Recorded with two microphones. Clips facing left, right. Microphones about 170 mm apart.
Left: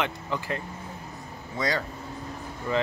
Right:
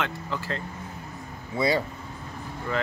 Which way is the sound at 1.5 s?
10° right (ahead or behind).